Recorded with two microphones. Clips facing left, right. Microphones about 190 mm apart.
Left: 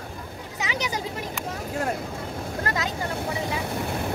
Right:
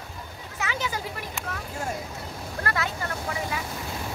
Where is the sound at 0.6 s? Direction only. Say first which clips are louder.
Left 1 dB; 15° left (ahead or behind).